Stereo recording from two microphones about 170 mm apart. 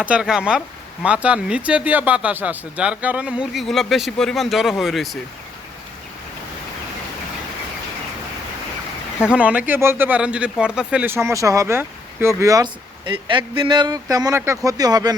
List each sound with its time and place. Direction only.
0.0 s speech: 5° right (ahead or behind)
9.2 s speech: 5° right (ahead or behind); by 15.1 s 20° right (ahead or behind)